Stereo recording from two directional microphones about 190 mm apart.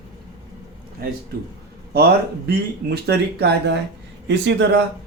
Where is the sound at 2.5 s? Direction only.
60° right (ahead or behind).